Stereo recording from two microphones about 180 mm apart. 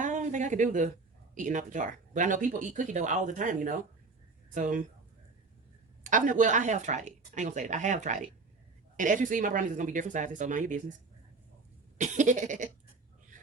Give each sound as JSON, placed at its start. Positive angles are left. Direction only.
{"t": 0.0, "sound": "speech", "side_deg": -45}
{"t": 6.0, "sound": "speech", "side_deg": -45}
{"t": 11.9, "sound": "speech", "side_deg": -40}